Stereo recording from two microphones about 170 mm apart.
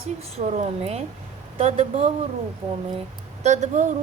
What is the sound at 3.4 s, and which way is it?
Speech, 45° right (ahead or behind).